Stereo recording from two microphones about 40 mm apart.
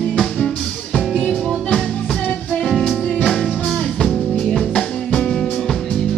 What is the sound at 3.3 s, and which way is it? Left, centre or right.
Music, centre.